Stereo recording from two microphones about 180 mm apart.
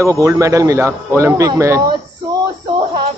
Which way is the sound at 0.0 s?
15° right (ahead or behind).